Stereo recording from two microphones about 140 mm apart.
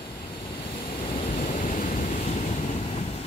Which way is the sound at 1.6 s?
75° left (ahead or behind).